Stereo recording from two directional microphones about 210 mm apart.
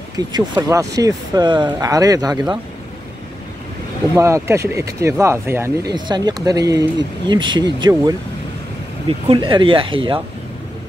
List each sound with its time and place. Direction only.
0.3 s speech: 15° right (ahead or behind)
4.1 s speech: 15° right (ahead or behind)
9.3 s speech: 25° right (ahead or behind)